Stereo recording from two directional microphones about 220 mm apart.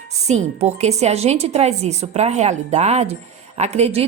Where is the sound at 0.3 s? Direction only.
30° right (ahead or behind).